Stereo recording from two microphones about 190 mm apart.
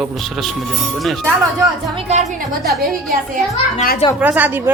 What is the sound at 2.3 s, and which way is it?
Speech, 45° right (ahead or behind).